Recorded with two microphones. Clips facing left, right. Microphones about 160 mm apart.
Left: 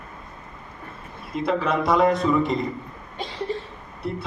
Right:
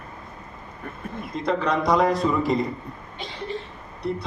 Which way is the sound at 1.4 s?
5° left (ahead or behind).